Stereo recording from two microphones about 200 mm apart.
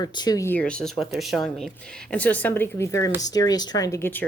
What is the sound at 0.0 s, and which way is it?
Speech, 20° left (ahead or behind).